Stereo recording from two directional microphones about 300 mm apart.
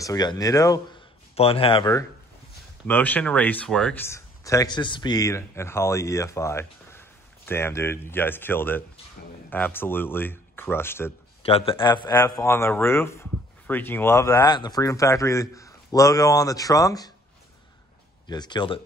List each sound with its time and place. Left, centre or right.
0.0 s speech: centre
11.4 s speech: centre
18.2 s speech: centre